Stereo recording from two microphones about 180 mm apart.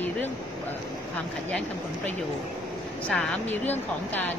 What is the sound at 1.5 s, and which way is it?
Speech, 10° left (ahead or behind).